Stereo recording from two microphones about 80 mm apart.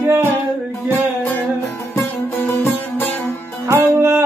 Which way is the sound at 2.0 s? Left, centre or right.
Left.